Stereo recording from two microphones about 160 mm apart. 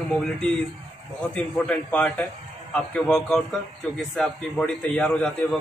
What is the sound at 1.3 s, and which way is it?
A man's voice, 5° left (ahead or behind).